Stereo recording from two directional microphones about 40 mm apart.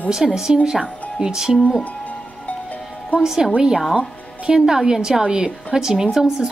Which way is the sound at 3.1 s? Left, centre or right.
Centre.